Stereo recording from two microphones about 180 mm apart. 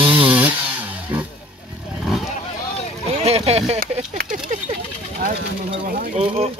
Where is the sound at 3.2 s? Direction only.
35° right (ahead or behind).